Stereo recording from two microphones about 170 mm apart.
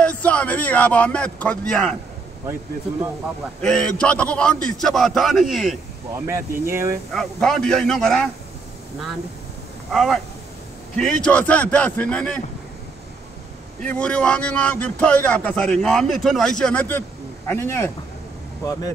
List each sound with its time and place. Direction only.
0.0 s a man's voice: 10° left (ahead or behind)
3.6 s a man's voice: 5° left (ahead or behind)
6.1 s speech: 15° right (ahead or behind)
7.2 s a man's voice: 5° left (ahead or behind)
9.9 s a man's voice: centre (ahead or behind)
13.8 s a man's voice: 5° left (ahead or behind)